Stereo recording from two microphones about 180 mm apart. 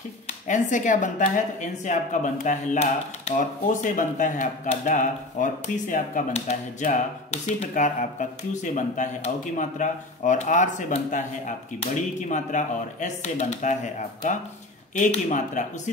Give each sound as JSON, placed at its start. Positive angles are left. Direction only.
{"t": 0.5, "sound": "speech", "side_deg": 45}